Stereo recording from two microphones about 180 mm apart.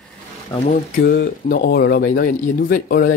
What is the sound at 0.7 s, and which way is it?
Speech, 55° left (ahead or behind).